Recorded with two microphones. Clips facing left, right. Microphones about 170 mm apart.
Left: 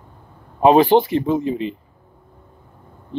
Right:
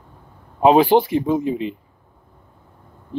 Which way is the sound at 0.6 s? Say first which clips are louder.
Left 1 dB; 5° right (ahead or behind).